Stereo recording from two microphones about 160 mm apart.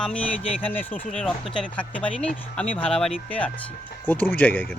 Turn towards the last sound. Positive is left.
turn(degrees=10)  # may be behind; listen again after turning